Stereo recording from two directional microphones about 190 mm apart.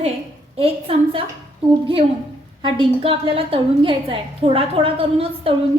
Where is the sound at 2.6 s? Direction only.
25° right (ahead or behind).